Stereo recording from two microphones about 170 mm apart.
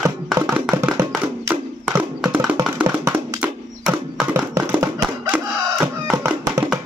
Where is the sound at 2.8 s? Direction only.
20° right (ahead or behind).